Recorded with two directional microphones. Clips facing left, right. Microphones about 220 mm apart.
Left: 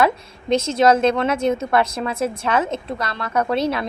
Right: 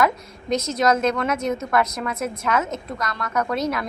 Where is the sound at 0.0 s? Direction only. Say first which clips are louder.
Left 3 dB; 30° left (ahead or behind).